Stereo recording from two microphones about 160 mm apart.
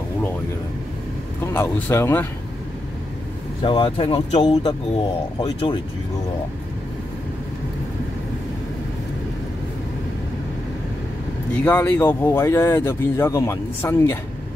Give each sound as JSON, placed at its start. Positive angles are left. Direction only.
{"t": 1.5, "sound": "speech", "side_deg": 15}
{"t": 3.6, "sound": "speech", "side_deg": 35}
{"t": 11.6, "sound": "speech", "side_deg": 15}